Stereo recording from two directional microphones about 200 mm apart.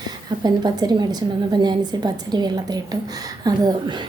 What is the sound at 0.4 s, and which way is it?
A woman's voice, 20° right (ahead or behind).